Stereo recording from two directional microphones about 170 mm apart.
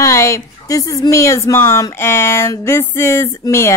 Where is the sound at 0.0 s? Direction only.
20° left (ahead or behind).